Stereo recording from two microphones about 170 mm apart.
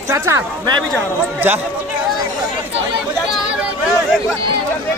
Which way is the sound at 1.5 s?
10° right (ahead or behind).